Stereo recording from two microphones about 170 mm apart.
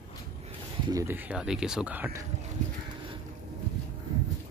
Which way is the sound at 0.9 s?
15° right (ahead or behind).